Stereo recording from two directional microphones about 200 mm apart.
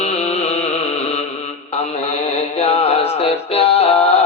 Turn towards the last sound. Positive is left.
turn(degrees=30)  # may be behind; listen again after turning